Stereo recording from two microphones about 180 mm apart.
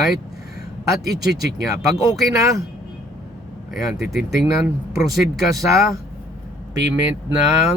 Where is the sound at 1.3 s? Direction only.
70° right (ahead or behind).